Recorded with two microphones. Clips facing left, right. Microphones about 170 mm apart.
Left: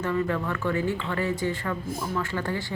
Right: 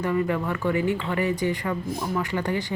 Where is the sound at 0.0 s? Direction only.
15° right (ahead or behind).